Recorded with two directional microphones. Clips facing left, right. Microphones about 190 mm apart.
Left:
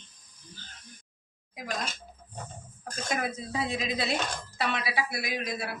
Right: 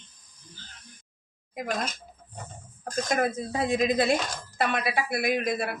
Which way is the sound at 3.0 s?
45° right (ahead or behind).